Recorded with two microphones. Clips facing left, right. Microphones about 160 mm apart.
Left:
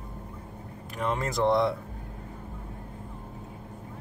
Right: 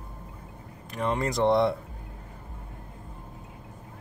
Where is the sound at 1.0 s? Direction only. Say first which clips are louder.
Right 2 dB; centre (ahead or behind).